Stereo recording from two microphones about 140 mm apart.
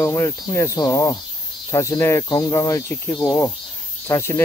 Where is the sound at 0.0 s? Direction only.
20° left (ahead or behind).